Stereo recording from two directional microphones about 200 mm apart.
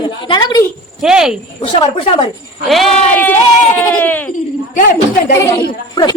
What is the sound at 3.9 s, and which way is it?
Speech, 10° left (ahead or behind).